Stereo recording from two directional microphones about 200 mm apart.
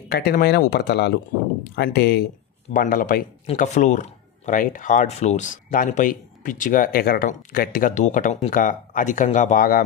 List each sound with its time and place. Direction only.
0.1 s speech: 50° left (ahead or behind)